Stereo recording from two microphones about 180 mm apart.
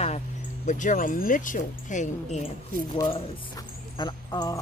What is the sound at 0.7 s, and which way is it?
Speech, 45° left (ahead or behind).